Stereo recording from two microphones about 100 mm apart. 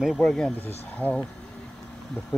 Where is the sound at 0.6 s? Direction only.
20° left (ahead or behind).